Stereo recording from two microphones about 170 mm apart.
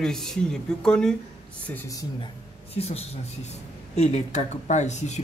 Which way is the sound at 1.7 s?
15° left (ahead or behind).